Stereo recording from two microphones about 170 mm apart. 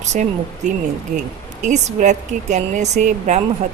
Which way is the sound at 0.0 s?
45° right (ahead or behind).